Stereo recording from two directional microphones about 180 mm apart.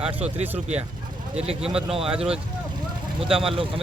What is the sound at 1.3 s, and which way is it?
Speech, 35° right (ahead or behind).